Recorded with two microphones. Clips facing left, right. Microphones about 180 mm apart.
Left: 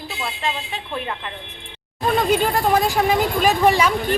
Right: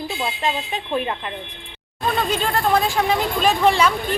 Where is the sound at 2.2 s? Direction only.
10° left (ahead or behind).